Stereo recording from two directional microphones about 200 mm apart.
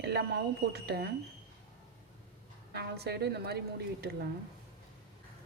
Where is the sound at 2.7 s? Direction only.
55° right (ahead or behind).